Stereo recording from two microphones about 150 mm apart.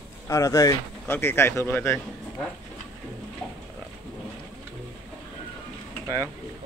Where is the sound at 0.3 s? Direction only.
20° left (ahead or behind).